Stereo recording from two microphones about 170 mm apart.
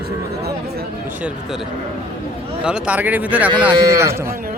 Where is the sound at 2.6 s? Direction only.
5° right (ahead or behind).